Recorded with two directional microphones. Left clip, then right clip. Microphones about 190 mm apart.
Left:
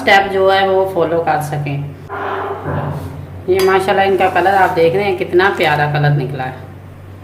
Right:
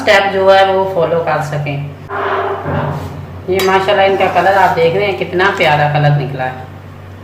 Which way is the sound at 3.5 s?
50° left (ahead or behind).